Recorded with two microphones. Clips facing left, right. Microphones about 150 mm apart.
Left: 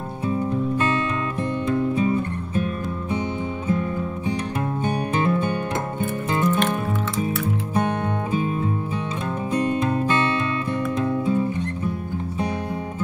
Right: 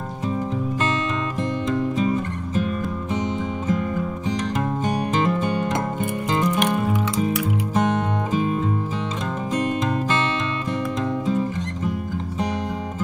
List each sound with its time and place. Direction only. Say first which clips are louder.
6.3 s music: right 1 dB; 15° right (ahead or behind)